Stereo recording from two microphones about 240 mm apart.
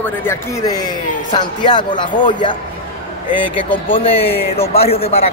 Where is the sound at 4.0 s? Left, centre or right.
Left.